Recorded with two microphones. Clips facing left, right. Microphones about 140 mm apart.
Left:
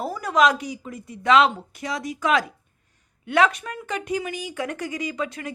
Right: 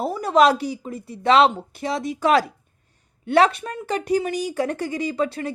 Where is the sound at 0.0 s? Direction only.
25° right (ahead or behind).